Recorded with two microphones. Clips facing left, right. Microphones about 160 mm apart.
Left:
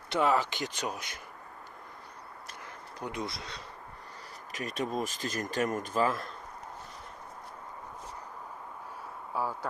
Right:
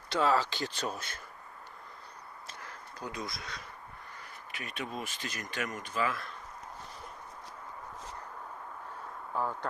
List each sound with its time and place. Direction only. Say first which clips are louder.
0.1 s speech: left 1 dB; 15° left (ahead or behind)
2.6 s speech: left 3 dB; 25° left (ahead or behind)
4.5 s speech: left 7 dB; 40° left (ahead or behind)
9.3 s speech: even; 5° left (ahead or behind)